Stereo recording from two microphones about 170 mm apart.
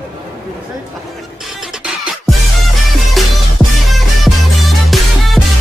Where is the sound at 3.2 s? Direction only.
Centre (ahead or behind).